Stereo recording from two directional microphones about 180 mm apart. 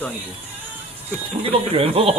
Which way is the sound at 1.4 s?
30° right (ahead or behind).